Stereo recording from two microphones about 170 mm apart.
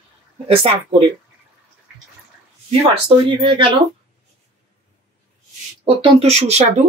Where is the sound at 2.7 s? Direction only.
30° right (ahead or behind).